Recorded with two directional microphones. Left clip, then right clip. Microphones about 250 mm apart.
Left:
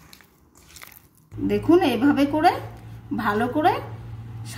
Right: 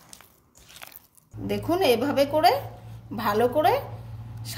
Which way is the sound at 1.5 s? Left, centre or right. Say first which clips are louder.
Left 3 dB; right.